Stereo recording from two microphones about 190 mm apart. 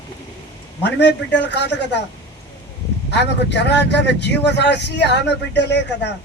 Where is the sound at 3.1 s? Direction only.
65° left (ahead or behind).